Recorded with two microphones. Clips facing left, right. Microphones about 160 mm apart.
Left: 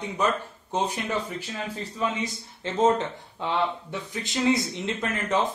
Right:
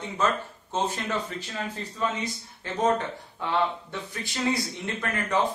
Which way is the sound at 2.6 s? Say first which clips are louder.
Left 3 dB; 20° left (ahead or behind).